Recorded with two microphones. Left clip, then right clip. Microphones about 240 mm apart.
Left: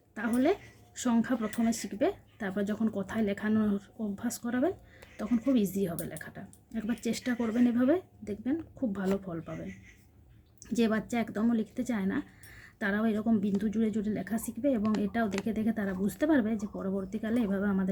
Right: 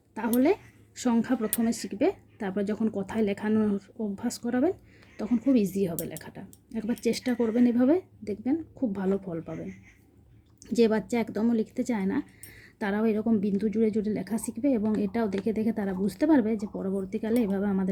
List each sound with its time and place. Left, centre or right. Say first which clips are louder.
0.1 s speech: right 4 dB; centre
10.6 s speech: right 6 dB; centre